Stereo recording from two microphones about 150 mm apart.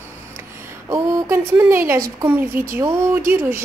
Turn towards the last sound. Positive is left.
turn(degrees=-15)  # may be behind; listen again after turning